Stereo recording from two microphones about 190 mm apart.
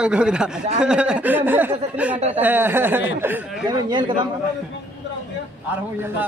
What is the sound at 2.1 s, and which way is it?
Speech, 35° right (ahead or behind).